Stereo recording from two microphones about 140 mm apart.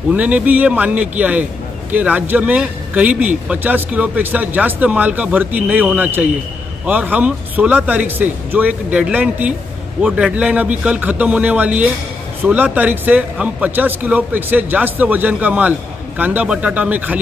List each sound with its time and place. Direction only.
0.1 s a man's voice: 10° right (ahead or behind)